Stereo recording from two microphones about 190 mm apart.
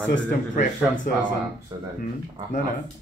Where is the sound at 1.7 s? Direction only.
20° right (ahead or behind).